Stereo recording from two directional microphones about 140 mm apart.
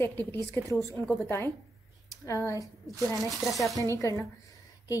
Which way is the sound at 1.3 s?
15° left (ahead or behind).